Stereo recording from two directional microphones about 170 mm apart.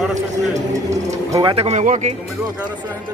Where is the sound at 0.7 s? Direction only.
20° right (ahead or behind); by 2.1 s 45° right (ahead or behind).